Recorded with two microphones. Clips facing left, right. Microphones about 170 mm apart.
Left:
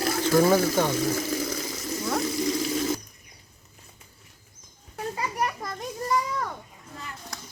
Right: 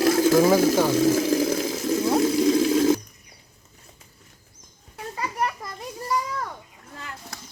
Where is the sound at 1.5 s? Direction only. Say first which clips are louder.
Right 8 dB; 50° right (ahead or behind).